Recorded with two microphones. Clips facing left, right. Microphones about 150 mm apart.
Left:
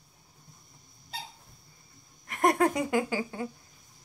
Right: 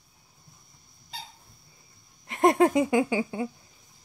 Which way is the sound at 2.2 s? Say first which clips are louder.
Right 4 dB; 25° right (ahead or behind).